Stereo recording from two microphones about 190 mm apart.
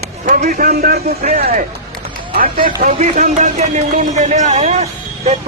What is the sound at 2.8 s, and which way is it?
Speech, 35° right (ahead or behind).